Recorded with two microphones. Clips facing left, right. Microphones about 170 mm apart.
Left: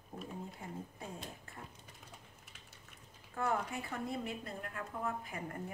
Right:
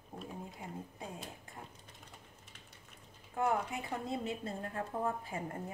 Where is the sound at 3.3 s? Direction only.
15° right (ahead or behind).